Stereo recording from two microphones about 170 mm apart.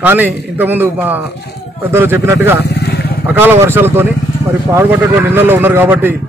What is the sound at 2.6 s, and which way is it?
Vehicle, 75° left (ahead or behind).